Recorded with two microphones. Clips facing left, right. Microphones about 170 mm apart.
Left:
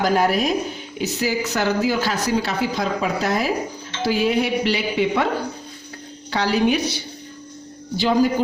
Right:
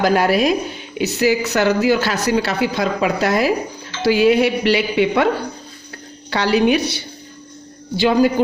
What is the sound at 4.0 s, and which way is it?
Speech, 75° right (ahead or behind).